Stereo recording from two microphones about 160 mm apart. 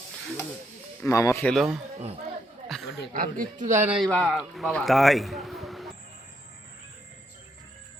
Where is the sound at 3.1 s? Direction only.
60° right (ahead or behind).